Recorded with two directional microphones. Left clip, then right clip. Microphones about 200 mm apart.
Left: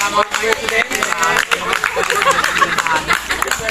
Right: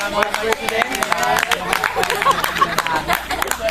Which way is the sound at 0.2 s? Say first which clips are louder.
Left 3 dB; 55° right (ahead or behind).